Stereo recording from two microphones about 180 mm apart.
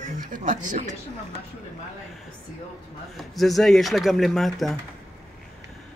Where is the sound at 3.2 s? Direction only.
Centre (ahead or behind).